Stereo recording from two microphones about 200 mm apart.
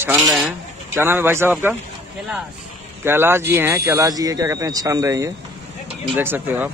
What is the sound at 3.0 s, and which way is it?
Speech, 10° right (ahead or behind).